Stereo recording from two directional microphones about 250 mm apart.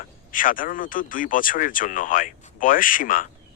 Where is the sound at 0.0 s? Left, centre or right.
Left.